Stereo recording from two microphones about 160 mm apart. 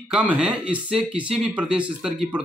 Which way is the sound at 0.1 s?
5° right (ahead or behind).